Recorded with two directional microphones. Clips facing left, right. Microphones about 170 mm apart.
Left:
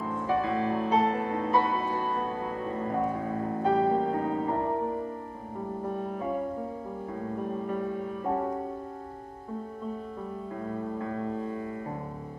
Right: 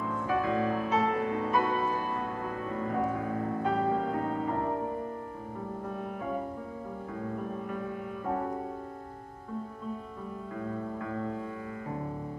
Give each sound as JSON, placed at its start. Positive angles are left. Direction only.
{"t": 0.3, "sound": "music", "side_deg": 30}
{"t": 5.9, "sound": "music", "side_deg": 30}